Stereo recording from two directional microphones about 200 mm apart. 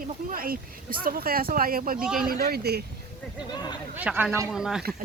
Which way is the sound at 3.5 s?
20° left (ahead or behind).